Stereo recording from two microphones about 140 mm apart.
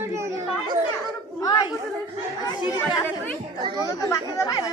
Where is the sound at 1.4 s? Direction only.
30° left (ahead or behind).